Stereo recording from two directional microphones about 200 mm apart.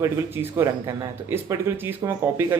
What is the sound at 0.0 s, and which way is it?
Speech, 15° right (ahead or behind).